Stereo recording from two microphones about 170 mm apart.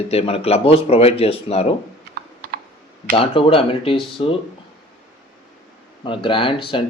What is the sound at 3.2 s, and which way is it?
Speech, 30° left (ahead or behind).